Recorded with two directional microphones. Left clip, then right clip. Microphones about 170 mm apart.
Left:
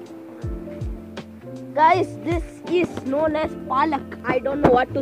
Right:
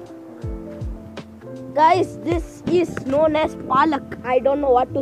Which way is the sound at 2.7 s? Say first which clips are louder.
Right 3 dB; centre (ahead or behind).